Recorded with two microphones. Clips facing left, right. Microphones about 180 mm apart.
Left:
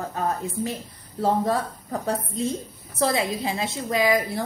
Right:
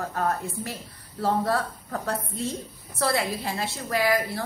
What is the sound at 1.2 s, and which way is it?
Speech, 15° left (ahead or behind).